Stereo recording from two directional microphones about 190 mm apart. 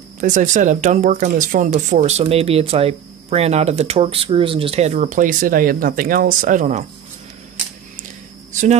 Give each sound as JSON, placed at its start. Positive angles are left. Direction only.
{"t": 0.2, "sound": "speech", "side_deg": -40}